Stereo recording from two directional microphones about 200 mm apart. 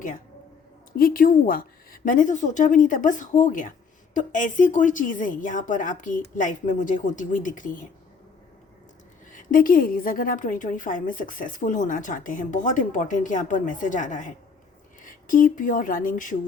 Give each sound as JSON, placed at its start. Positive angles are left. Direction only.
{"t": 0.9, "sound": "a woman's voice", "side_deg": 45}
{"t": 9.3, "sound": "a woman's voice", "side_deg": 40}